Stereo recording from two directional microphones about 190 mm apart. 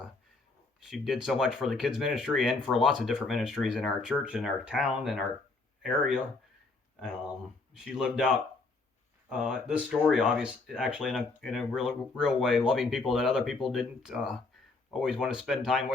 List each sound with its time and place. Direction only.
0.8 s speech: centre (ahead or behind)
7.8 s speech: centre (ahead or behind)